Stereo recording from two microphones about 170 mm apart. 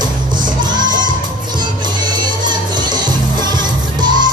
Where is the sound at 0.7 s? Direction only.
25° right (ahead or behind).